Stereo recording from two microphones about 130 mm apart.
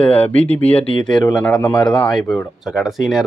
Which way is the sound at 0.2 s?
10° left (ahead or behind).